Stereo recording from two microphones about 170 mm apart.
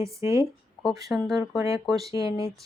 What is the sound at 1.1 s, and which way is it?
Speech, centre (ahead or behind).